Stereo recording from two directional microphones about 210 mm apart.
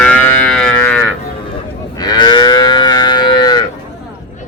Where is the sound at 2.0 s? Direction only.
20° left (ahead or behind).